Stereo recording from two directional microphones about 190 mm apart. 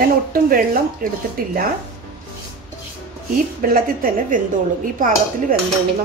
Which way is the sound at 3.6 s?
45° right (ahead or behind).